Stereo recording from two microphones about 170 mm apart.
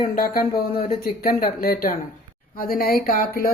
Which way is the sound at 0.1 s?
60° left (ahead or behind).